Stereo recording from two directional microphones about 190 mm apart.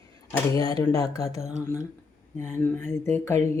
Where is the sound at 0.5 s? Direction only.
20° left (ahead or behind).